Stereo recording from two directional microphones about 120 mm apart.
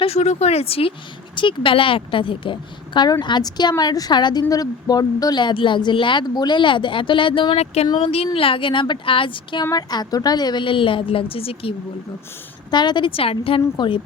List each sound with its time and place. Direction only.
0.0 s a woman's voice: 60° left (ahead or behind); by 7.6 s 45° left (ahead or behind)
7.6 s a woman's voice: 60° left (ahead or behind); by 9.6 s 45° left (ahead or behind)
9.6 s a woman's voice: 35° left (ahead or behind); by 11.7 s 50° left (ahead or behind)
12.7 s a woman's voice: 40° left (ahead or behind)